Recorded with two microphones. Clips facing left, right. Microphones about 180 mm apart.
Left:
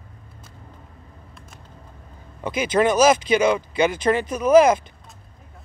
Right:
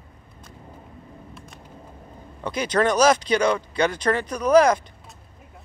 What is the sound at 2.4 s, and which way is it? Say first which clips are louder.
Speech: left 2 dB; 5° left (ahead or behind).